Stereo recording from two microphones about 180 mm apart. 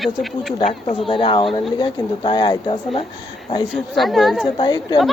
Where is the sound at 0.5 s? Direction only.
30° left (ahead or behind).